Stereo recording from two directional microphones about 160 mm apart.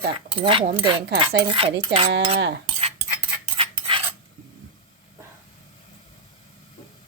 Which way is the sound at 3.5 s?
35° right (ahead or behind).